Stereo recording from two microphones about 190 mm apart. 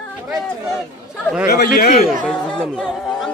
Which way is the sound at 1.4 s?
55° left (ahead or behind).